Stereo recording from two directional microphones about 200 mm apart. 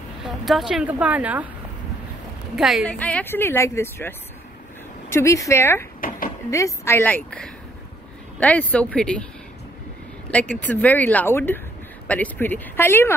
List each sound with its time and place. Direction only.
0.2 s speech: centre (ahead or behind)
2.5 s speech: centre (ahead or behind)
5.1 s speech: 15° left (ahead or behind)
5.9 s a sound: 45° left (ahead or behind)
6.5 s speech: 15° left (ahead or behind)
10.6 s speech: 10° left (ahead or behind)